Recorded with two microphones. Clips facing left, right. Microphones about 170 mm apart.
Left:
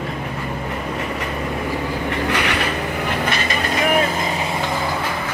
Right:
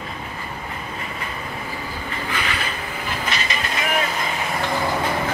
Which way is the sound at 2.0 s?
70° left (ahead or behind).